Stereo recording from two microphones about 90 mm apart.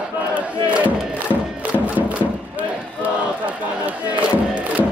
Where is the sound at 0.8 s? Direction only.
15° right (ahead or behind).